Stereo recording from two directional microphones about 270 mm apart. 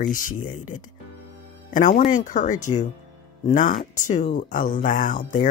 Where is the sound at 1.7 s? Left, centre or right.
Left.